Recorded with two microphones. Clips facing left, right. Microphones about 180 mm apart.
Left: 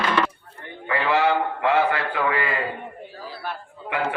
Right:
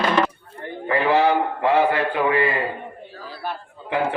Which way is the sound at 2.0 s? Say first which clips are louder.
Right 5 dB; 20° right (ahead or behind).